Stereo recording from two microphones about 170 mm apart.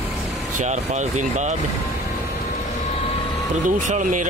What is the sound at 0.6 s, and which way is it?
Speech, 45° right (ahead or behind).